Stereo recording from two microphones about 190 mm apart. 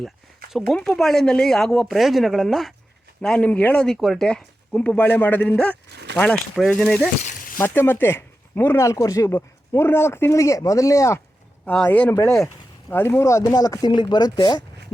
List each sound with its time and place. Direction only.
0.6 s speech: 5° left (ahead or behind)
5.9 s speech: 60° right (ahead or behind)
6.1 s speech: centre (ahead or behind)
7.3 s a sound: 45° left (ahead or behind)
7.6 s speech: 10° left (ahead or behind)
11.6 s speech: 5° left (ahead or behind); by 14.6 s 20° left (ahead or behind)